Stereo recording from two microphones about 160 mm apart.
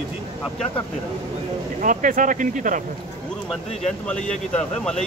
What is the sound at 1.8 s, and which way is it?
Speech, 55° right (ahead or behind).